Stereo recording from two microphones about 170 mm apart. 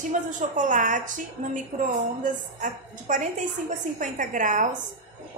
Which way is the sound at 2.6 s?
50° right (ahead or behind).